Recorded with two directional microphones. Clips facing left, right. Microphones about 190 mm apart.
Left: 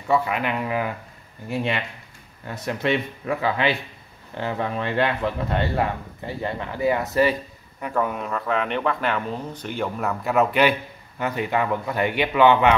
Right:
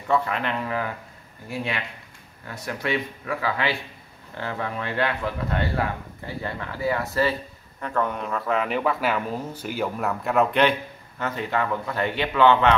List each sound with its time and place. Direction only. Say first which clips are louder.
0.1 s speech: left 2 dB; 10° left (ahead or behind)